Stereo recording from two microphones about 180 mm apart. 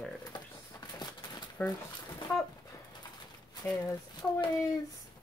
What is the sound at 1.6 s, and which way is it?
Speech, 10° left (ahead or behind).